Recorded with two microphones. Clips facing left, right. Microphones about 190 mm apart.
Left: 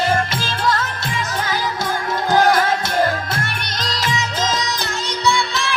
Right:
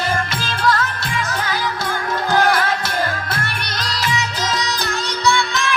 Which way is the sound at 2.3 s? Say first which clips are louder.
Left 2 dB; 20° left (ahead or behind).